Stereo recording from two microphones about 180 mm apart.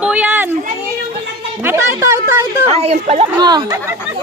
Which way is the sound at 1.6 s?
15° right (ahead or behind).